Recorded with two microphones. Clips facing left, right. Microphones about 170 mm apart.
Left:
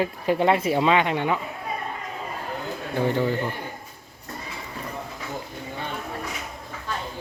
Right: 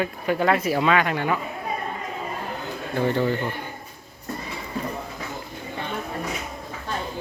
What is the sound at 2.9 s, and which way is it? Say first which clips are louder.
Speech: right 1 dB; 15° left (ahead or behind).